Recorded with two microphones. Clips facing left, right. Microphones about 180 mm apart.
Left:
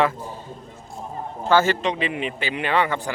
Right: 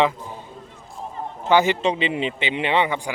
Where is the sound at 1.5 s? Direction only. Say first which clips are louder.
Right 1 dB; 15° right (ahead or behind).